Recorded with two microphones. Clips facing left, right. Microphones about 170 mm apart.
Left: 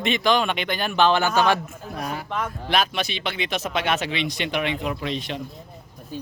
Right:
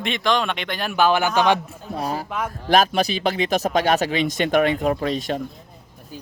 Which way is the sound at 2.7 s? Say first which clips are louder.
Right 7 dB; 40° right (ahead or behind).